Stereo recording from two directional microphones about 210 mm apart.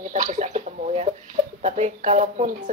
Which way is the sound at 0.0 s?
35° right (ahead or behind).